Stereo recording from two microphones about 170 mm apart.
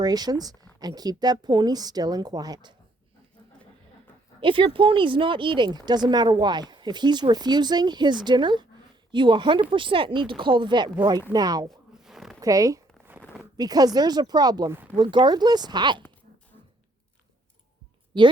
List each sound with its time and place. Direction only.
0.0 s speech: 25° right (ahead or behind)
4.4 s speech: 30° right (ahead or behind)
11.9 s zipper: centre (ahead or behind)
12.4 s speech: 20° right (ahead or behind)